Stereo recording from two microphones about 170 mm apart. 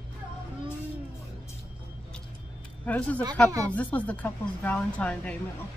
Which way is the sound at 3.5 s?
20° right (ahead or behind).